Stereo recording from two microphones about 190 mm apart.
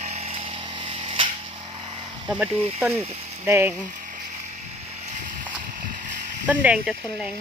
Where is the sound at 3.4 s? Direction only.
10° right (ahead or behind).